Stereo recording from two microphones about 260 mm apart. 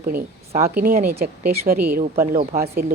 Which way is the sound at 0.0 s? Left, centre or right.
Right.